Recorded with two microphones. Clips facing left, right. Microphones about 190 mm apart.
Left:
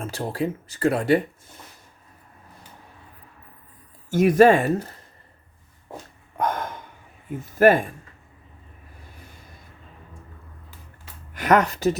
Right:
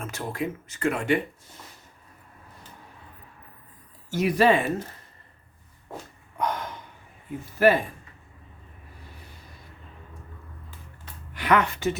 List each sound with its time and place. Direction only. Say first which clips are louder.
0.0 s speech: left 4 dB; 30° left (ahead or behind)
4.1 s speech: left 6 dB; 50° left (ahead or behind)
6.3 s a sound: left 3 dB; 50° left (ahead or behind)
7.6 s speech: left 4 dB; 50° left (ahead or behind)
11.3 s speech: left 4 dB; 45° left (ahead or behind)